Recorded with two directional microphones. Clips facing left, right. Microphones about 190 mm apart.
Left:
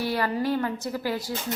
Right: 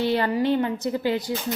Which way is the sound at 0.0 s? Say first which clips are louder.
Right 4 dB; 25° right (ahead or behind).